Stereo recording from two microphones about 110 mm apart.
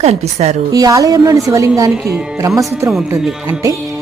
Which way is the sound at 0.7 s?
35° right (ahead or behind).